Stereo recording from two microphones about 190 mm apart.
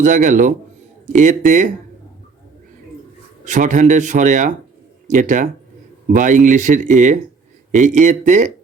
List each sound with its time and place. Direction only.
0.0 s a man's voice: 40° right (ahead or behind)
3.4 s a man's voice: 40° right (ahead or behind)